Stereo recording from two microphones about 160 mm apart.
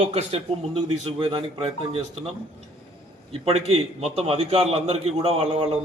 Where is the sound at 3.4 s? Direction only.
40° right (ahead or behind).